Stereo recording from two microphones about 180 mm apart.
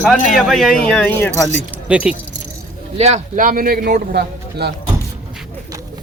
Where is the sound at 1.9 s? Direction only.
5° right (ahead or behind).